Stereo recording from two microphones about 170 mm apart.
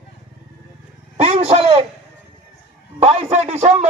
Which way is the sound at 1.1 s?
35° right (ahead or behind).